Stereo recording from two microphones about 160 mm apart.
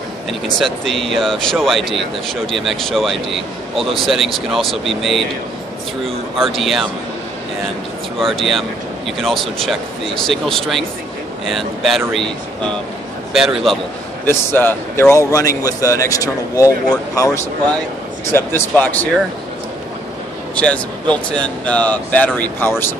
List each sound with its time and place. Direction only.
0.3 s speech: centre (ahead or behind)
8.2 s speech: centre (ahead or behind)
13.3 s a man's voice: 5° right (ahead or behind)
14.2 s a man's voice: 15° left (ahead or behind)
20.5 s speech: 10° left (ahead or behind)